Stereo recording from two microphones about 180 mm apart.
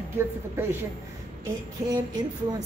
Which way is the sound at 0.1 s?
10° right (ahead or behind).